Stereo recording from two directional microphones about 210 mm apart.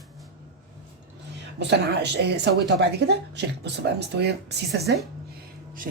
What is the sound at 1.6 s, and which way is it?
A woman's voice, 55° right (ahead or behind).